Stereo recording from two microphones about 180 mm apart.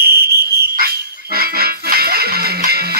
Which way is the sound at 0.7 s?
55° right (ahead or behind).